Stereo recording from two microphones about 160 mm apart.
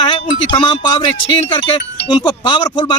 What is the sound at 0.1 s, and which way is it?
A man's voice, 30° left (ahead or behind).